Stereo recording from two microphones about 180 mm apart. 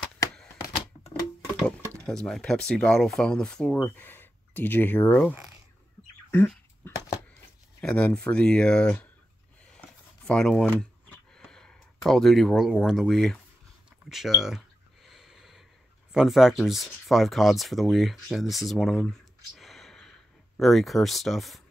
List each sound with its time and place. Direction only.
1.6 s speech: 5° left (ahead or behind)
6.3 s a sound: 10° left (ahead or behind)
7.8 s speech: 5° left (ahead or behind)
9.8 s a sound: 5° left (ahead or behind)
14.0 s speech: centre (ahead or behind)
15.0 s snort: centre (ahead or behind)
16.1 s speech: centre (ahead or behind)